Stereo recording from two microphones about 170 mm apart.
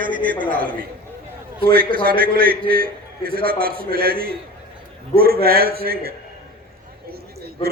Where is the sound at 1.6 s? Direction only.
60° right (ahead or behind).